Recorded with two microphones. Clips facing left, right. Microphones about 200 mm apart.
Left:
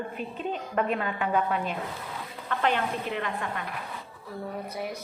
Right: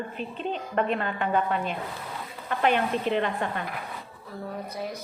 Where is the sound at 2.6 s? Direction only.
20° right (ahead or behind).